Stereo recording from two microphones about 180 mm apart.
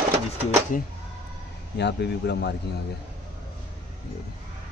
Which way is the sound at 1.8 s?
70° left (ahead or behind).